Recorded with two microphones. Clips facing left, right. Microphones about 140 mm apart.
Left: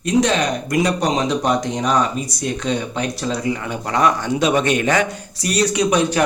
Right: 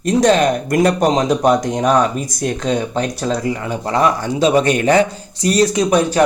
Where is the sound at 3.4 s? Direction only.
35° right (ahead or behind).